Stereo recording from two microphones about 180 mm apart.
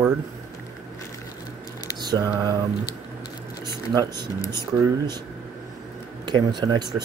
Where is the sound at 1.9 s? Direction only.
20° right (ahead or behind).